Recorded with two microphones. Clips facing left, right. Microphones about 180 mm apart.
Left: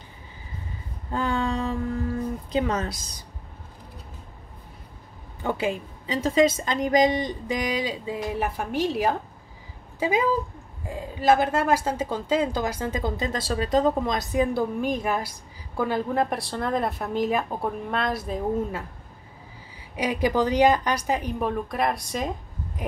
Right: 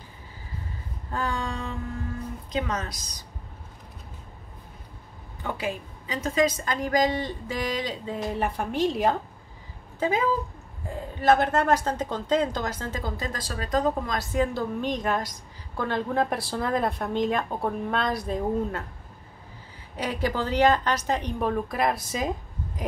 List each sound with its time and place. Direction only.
1.1 s speech: 25° left (ahead or behind)
2.5 s speech: 30° left (ahead or behind)
5.4 s a woman's voice: 30° left (ahead or behind); by 18.9 s 5° left (ahead or behind)
20.0 s speech: 15° left (ahead or behind); by 22.3 s centre (ahead or behind)